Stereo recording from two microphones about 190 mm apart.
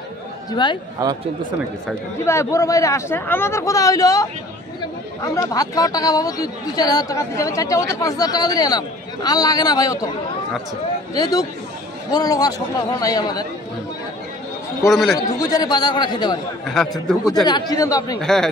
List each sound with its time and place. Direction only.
0.5 s speech: 25° left (ahead or behind)
1.0 s speech: 15° right (ahead or behind)
2.2 s speech: 15° left (ahead or behind)
11.1 s speech: 20° left (ahead or behind)
14.9 s a man's voice: centre (ahead or behind)
15.1 s speech: 20° left (ahead or behind)
16.6 s a man's voice: centre (ahead or behind)
17.5 s speech: 20° left (ahead or behind)
18.2 s a man's voice: centre (ahead or behind)